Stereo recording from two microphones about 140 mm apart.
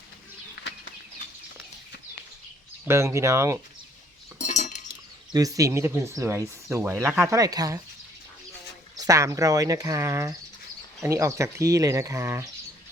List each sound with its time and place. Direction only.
2.8 s speech: 20° right (ahead or behind)
4.4 s chink: 60° left (ahead or behind)
5.3 s speech: 25° right (ahead or behind)
9.0 s speech: 25° right (ahead or behind)